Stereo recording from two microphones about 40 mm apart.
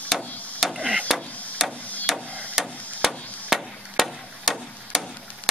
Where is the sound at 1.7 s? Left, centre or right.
Left.